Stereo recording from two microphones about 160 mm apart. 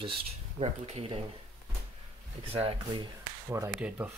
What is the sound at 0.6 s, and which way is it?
Speech, 40° right (ahead or behind).